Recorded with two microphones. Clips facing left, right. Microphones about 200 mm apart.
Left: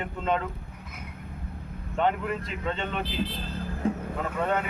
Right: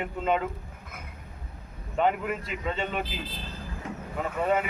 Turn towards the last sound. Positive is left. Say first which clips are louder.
# right 1 dB
turn(degrees=-5)  # may be behind; listen again after turning